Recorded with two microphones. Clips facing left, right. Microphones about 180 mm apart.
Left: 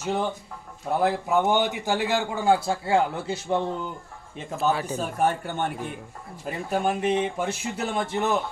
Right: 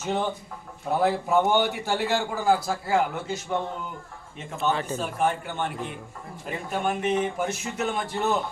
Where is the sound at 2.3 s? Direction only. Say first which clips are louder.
Left 1 dB; 25° left (ahead or behind).